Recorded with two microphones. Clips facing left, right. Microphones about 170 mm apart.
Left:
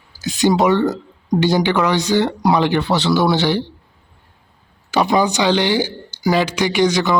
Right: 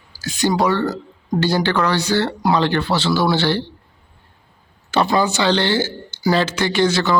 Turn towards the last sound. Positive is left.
turn(degrees=15)  # may be behind; listen again after turning